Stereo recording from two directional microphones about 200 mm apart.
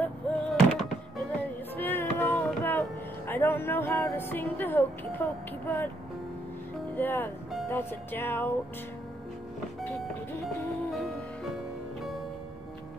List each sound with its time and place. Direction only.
0.0 s music: centre (ahead or behind)
7.0 s music: 10° left (ahead or behind)
10.4 s music: centre (ahead or behind)